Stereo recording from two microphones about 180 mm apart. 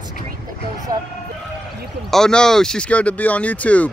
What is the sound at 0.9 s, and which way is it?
Vehicle, 20° right (ahead or behind).